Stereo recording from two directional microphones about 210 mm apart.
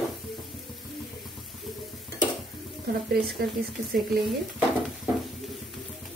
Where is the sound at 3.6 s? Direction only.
45° right (ahead or behind).